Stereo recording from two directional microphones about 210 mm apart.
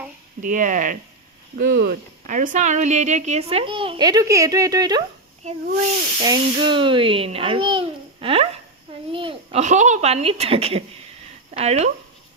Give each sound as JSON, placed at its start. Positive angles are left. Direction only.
{"t": 0.4, "sound": "speech", "side_deg": -40}
{"t": 5.4, "sound": "speech", "side_deg": -35}
{"t": 6.1, "sound": "speech", "side_deg": -20}